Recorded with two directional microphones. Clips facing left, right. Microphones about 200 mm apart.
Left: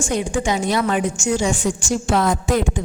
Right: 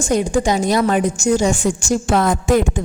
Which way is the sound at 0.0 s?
40° right (ahead or behind).